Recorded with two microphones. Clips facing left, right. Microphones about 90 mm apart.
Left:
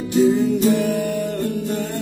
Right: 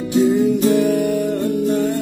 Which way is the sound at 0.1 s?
5° right (ahead or behind).